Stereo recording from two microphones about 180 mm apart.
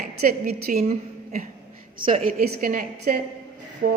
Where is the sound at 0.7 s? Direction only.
40° right (ahead or behind).